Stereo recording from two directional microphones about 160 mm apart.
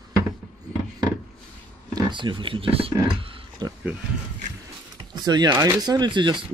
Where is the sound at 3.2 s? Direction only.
25° right (ahead or behind).